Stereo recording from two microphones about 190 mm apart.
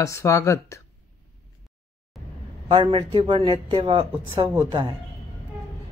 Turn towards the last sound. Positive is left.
turn(degrees=-25)  # may be behind; listen again after turning